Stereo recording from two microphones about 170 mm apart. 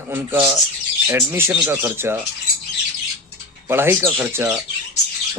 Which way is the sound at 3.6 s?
15° right (ahead or behind).